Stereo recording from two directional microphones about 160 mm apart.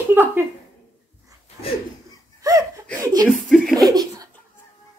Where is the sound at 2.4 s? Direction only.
20° right (ahead or behind).